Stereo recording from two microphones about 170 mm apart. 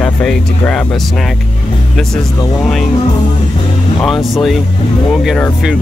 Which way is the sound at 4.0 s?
Centre (ahead or behind).